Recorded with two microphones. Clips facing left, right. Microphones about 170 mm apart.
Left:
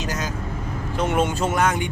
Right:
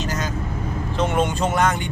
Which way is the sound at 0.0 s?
10° left (ahead or behind).